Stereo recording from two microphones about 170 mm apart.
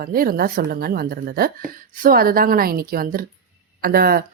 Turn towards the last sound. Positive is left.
turn(degrees=-60)  # may be behind; listen again after turning